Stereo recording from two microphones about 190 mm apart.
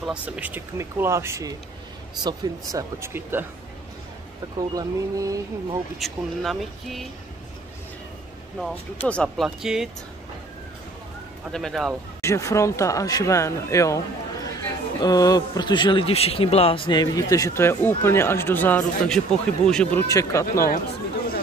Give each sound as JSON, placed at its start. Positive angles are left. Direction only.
{"t": 0.0, "sound": "speech", "side_deg": -5}
{"t": 4.6, "sound": "speech", "side_deg": -20}
{"t": 5.9, "sound": "speech", "side_deg": 0}
{"t": 8.5, "sound": "speech", "side_deg": 5}
{"t": 11.5, "sound": "speech", "side_deg": 0}
{"t": 12.2, "sound": "speech", "side_deg": 15}